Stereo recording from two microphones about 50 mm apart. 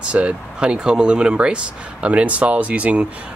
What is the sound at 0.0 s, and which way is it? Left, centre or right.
Speech, right.